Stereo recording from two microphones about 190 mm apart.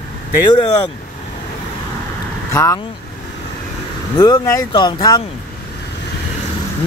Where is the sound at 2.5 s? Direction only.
15° left (ahead or behind).